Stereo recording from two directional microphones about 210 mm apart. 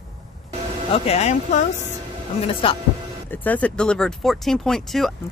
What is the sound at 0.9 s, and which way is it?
Speech, 30° left (ahead or behind).